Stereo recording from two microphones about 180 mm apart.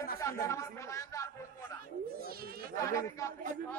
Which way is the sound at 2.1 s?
55° right (ahead or behind).